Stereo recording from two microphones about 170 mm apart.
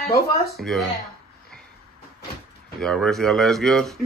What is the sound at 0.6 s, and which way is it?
Speech, centre (ahead or behind).